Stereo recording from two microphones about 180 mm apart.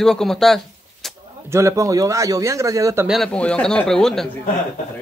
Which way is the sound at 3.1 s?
5° left (ahead or behind).